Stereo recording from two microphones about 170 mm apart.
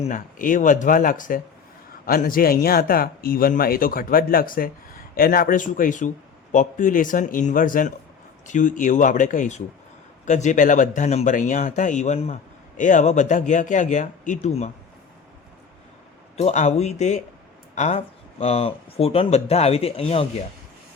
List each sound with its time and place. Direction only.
0.0 s speech: 50° left (ahead or behind)
16.4 s speech: 40° left (ahead or behind)